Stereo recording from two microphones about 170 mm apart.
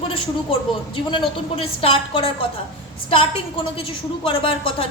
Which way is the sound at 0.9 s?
30° left (ahead or behind).